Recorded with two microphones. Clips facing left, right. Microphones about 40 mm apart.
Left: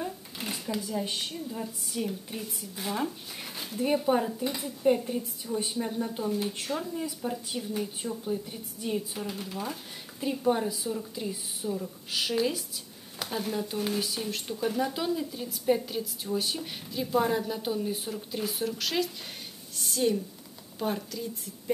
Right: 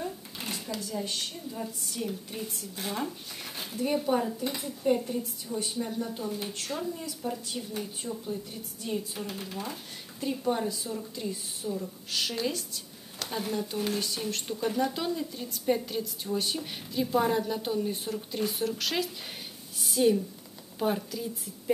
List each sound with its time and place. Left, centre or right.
0.0 s a sound: centre
0.7 s a woman's voice: centre
3.8 s speech: centre
4.5 s a woman's voice: centre
4.8 s speech: centre
6.5 s speech: centre
9.3 s a woman's voice: centre